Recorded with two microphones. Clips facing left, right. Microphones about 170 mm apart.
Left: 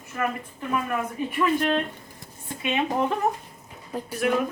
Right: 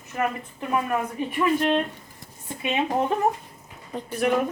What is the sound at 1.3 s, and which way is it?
Speech, 25° right (ahead or behind).